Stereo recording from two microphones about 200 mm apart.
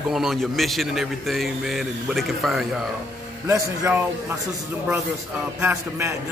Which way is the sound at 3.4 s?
15° right (ahead or behind).